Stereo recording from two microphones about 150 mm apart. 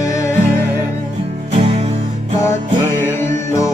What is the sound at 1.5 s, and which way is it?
Music, 45° right (ahead or behind).